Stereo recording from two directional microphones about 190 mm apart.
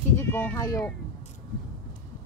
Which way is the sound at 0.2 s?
10° left (ahead or behind).